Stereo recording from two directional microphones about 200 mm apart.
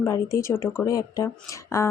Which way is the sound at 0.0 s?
15° left (ahead or behind).